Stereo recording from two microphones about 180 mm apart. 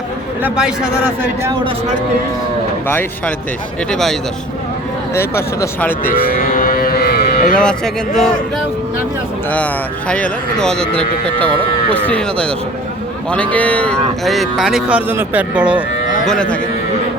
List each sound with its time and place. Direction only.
0.4 s speech: 5° right (ahead or behind)
2.8 s speech: 10° left (ahead or behind)
5.1 s speech: 15° left (ahead or behind)
6.1 s cattle: 55° left (ahead or behind)
7.5 s speech: 5° left (ahead or behind)
10.1 s speech: 5° left (ahead or behind)
12.0 s speech: 5° left (ahead or behind)
16.2 s speech: 5° left (ahead or behind)